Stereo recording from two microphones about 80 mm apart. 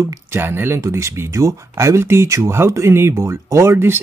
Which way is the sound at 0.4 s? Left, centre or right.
Right.